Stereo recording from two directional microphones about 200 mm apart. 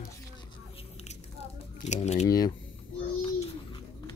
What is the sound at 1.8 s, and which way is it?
Speech, 35° left (ahead or behind).